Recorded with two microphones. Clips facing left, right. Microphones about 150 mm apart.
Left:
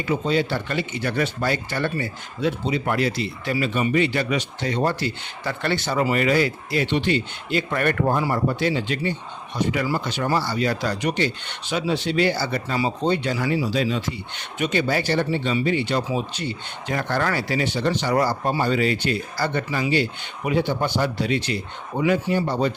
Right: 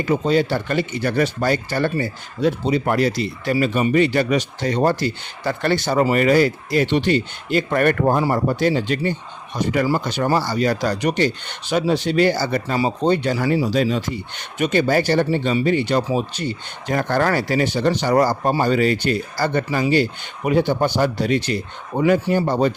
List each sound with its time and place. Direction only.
0.0 s speech: 45° right (ahead or behind)